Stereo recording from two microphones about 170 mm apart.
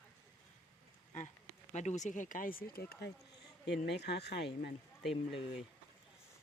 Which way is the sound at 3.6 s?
80° left.